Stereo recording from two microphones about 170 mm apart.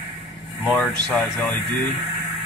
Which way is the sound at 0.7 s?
5° left (ahead or behind).